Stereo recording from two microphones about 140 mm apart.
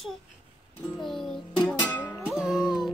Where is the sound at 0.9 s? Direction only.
Centre (ahead or behind).